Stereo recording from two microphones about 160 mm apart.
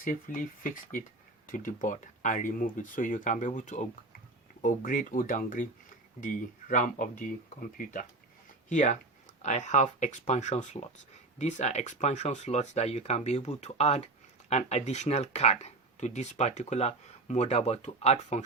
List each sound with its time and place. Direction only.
0.0 s speech: 55° left (ahead or behind)